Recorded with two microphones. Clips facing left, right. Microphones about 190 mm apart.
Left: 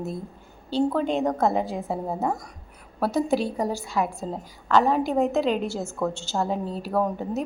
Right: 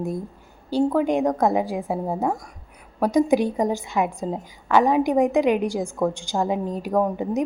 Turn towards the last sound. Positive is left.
turn(degrees=-15)  # may be behind; listen again after turning